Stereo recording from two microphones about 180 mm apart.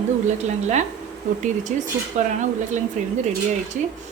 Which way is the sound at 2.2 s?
40° right (ahead or behind).